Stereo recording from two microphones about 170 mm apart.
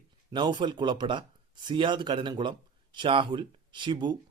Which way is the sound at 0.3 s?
25° right (ahead or behind).